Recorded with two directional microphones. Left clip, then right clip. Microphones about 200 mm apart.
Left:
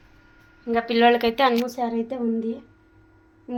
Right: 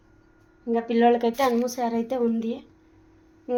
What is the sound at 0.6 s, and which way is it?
A woman's voice, 10° right (ahead or behind).